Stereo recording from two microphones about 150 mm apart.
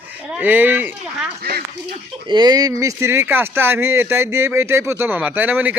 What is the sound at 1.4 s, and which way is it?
Speech, 90° right.